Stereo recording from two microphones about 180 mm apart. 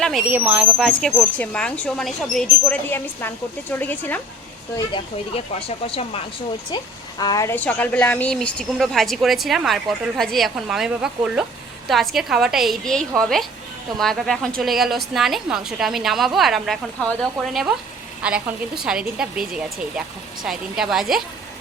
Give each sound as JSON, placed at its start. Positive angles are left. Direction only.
{"t": 0.0, "sound": "speech", "side_deg": 0}
{"t": 4.9, "sound": "speech", "side_deg": 30}
{"t": 7.2, "sound": "speech", "side_deg": 20}